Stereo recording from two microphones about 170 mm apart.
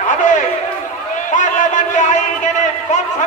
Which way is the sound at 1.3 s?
45° left (ahead or behind).